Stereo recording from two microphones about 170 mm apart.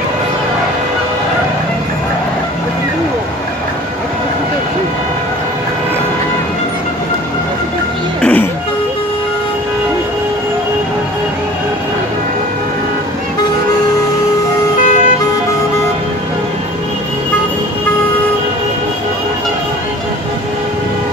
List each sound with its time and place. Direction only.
8.2 s music: 10° left (ahead or behind)
14.8 s vehicle: 45° left (ahead or behind)